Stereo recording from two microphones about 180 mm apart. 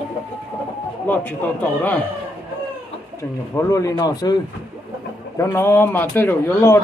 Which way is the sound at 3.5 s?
15° left (ahead or behind).